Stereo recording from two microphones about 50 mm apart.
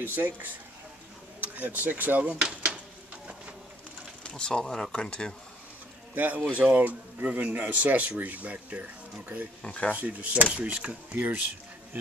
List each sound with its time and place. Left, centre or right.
0.0 s speech: right
2.4 s a sound: right
4.3 s speech: centre
6.1 s speech: right
9.7 s speech: left
9.9 s speech: right